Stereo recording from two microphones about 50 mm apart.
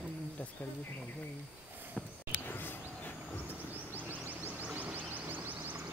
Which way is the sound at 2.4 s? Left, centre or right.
Left.